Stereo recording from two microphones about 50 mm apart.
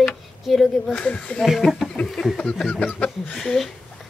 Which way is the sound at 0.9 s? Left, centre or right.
Left.